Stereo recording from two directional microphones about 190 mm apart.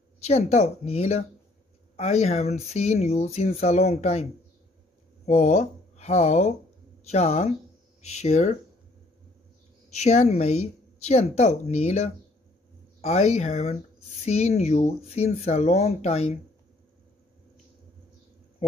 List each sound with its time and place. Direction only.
0.2 s speech: 35° left (ahead or behind)
9.8 s speech: 35° left (ahead or behind)